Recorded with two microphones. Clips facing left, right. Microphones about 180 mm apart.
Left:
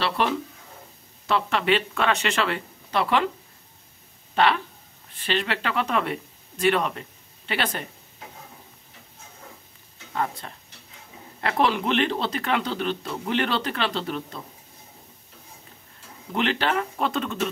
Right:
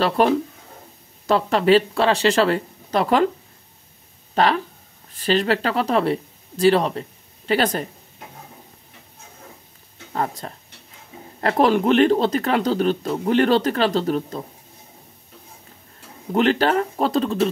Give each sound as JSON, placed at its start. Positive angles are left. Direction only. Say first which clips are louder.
{"t": 0.2, "sound": "speech", "louder": "right 7 dB", "side_deg": -45}
{"t": 4.4, "sound": "speech", "louder": "right 3 dB", "side_deg": -40}
{"t": 10.1, "sound": "speech", "louder": "right 3 dB", "side_deg": -40}
{"t": 16.3, "sound": "speech", "louder": "right 7 dB", "side_deg": -40}